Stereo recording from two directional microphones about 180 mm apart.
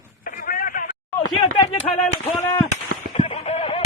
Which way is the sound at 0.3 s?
50° left (ahead or behind).